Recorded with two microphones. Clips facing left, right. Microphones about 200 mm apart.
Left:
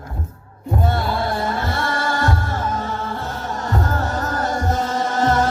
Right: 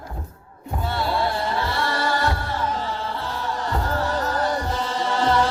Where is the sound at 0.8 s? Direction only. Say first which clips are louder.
Even; 50° left (ahead or behind).